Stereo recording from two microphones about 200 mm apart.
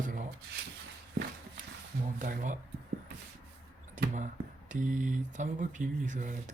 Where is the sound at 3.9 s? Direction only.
35° right (ahead or behind).